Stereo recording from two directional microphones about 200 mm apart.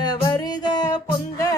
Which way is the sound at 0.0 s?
20° left (ahead or behind).